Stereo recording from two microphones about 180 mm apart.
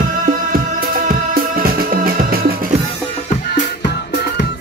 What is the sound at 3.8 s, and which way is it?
Music, 65° left (ahead or behind).